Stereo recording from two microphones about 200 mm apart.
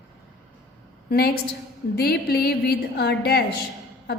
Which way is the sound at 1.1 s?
50° left (ahead or behind).